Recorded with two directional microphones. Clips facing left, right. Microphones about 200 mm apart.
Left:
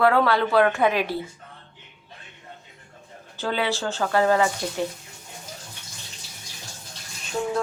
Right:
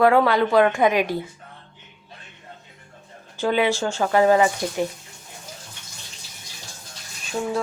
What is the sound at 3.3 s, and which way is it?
Speech, 15° right (ahead or behind).